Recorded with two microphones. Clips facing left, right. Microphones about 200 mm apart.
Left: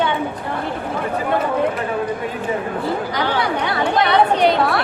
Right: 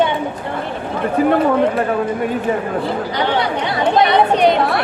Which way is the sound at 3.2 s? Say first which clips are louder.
Right 3 dB; 20° right (ahead or behind).